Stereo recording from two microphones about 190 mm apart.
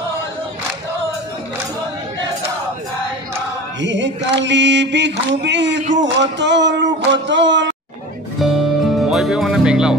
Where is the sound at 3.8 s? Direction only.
70° right (ahead or behind).